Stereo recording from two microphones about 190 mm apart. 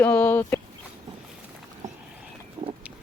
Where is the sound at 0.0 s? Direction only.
10° left (ahead or behind).